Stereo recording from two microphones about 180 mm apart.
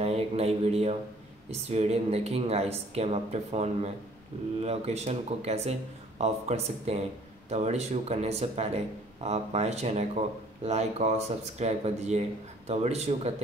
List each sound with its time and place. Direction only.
0.0 s speech: 35° right (ahead or behind)